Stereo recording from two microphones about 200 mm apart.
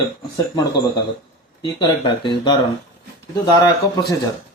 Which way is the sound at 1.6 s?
25° left (ahead or behind).